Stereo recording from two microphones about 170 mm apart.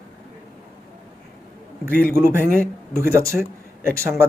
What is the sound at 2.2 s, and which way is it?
Speech, 15° right (ahead or behind).